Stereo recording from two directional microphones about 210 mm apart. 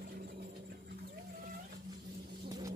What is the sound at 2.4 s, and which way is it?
Vehicle, 20° right (ahead or behind).